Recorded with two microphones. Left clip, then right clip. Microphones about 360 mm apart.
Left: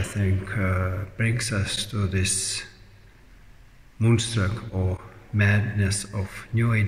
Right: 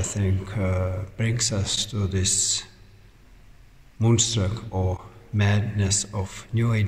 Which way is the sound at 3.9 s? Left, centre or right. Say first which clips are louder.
Right 2 dB; centre.